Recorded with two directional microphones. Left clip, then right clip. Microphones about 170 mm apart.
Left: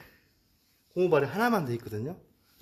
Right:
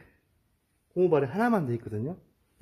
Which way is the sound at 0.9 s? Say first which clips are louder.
Right 1 dB; 35° right (ahead or behind).